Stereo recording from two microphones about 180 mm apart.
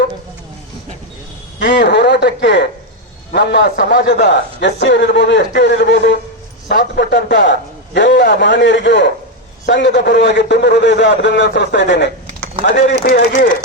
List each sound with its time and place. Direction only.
1.5 s a man's voice: 75° left (ahead or behind)
6.7 s a man's voice: 50° left (ahead or behind)
7.1 s a man's voice: 80° left
13.1 s speech: 65° left (ahead or behind)